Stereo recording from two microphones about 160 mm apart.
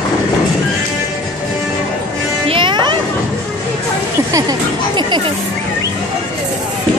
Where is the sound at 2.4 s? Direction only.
30° right (ahead or behind).